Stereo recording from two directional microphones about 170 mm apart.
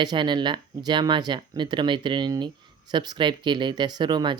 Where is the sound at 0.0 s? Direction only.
25° right (ahead or behind).